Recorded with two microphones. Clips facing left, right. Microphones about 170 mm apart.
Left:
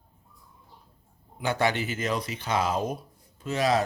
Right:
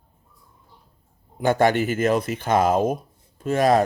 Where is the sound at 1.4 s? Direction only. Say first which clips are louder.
Right 8 dB; 50° right (ahead or behind).